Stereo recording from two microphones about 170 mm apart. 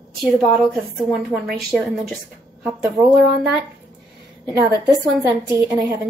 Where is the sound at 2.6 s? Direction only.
15° right (ahead or behind).